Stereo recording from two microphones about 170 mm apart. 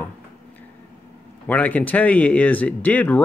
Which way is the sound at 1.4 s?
10° left (ahead or behind).